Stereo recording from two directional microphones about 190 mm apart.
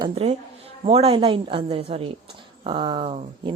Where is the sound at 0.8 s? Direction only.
30° right (ahead or behind).